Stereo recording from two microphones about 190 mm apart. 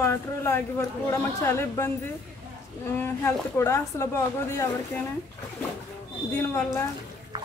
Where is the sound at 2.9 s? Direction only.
10° left (ahead or behind).